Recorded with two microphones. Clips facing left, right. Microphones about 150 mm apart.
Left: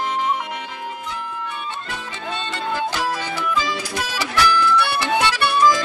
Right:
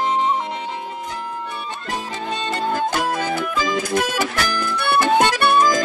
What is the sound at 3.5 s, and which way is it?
Music, 50° right (ahead or behind).